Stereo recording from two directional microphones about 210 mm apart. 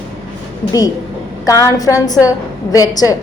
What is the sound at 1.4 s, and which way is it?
A woman's voice, 15° left (ahead or behind).